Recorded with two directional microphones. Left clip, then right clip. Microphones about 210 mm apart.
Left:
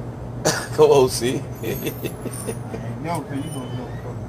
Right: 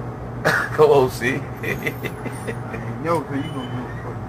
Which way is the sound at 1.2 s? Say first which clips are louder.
Right 1 dB; 20° left (ahead or behind).